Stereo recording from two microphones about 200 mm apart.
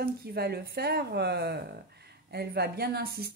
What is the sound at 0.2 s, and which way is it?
A woman's voice, 50° right (ahead or behind).